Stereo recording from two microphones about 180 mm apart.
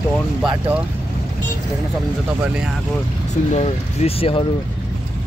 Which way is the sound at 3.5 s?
35° left (ahead or behind).